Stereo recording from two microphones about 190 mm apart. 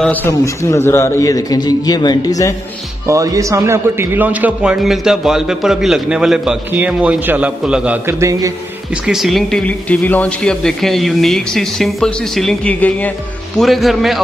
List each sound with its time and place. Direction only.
0.0 s a man's voice: 10° left (ahead or behind)
3.1 s a man's voice: 15° right (ahead or behind)
8.9 s a man's voice: 5° right (ahead or behind)